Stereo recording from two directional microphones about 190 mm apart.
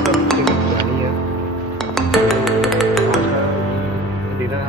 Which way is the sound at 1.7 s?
Centre (ahead or behind).